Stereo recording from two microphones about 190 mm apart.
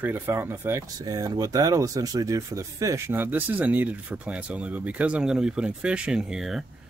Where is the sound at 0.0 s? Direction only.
10° right (ahead or behind).